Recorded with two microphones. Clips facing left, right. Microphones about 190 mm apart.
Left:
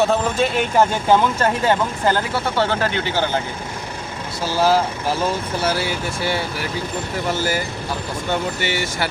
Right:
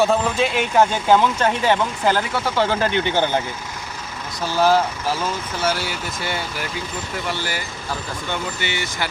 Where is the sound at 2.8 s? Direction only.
20° right (ahead or behind).